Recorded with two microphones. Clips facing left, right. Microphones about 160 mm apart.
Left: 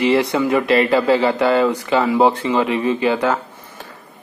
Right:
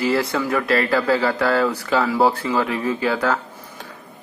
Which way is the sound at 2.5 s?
10° left (ahead or behind).